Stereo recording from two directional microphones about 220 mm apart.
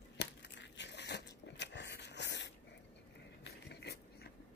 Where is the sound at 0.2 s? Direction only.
55° left (ahead or behind).